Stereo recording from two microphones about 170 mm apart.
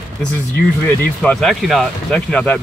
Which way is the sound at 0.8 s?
5° left (ahead or behind).